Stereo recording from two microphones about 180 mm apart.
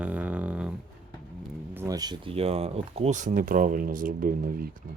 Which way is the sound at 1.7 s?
20° right (ahead or behind).